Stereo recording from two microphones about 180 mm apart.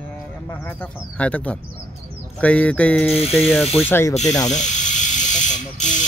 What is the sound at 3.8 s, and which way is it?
Speech, 10° left (ahead or behind).